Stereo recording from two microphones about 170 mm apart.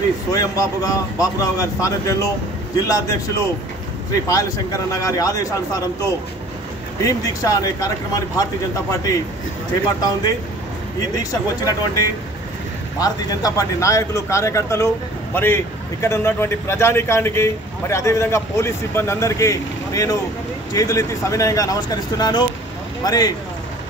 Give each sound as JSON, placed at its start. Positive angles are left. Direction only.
{"t": 0.3, "sound": "speech", "side_deg": 20}
{"t": 11.1, "sound": "speech", "side_deg": 20}